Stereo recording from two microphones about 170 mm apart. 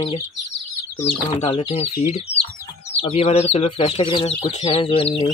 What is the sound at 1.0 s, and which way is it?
Speech, 35° left (ahead or behind).